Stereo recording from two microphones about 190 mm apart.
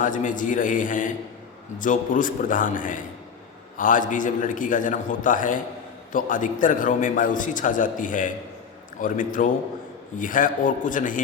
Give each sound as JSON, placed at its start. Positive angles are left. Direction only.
{"t": 0.0, "sound": "a man's voice", "side_deg": 45}